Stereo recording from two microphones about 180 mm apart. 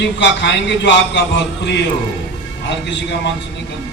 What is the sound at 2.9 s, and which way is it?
Speech, 80° left.